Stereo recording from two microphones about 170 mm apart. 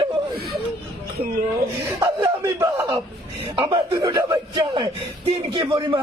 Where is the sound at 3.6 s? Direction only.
30° right (ahead or behind).